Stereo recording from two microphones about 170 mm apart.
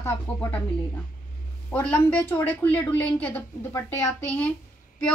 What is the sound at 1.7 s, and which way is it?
A woman's voice, 10° left (ahead or behind).